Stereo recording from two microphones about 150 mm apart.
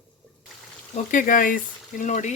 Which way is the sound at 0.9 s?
60° left (ahead or behind).